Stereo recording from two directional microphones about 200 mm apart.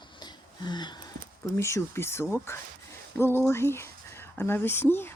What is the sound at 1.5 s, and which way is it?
Speech, 15° left (ahead or behind).